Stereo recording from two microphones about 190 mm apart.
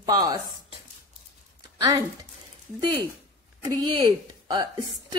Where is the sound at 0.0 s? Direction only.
20° right (ahead or behind).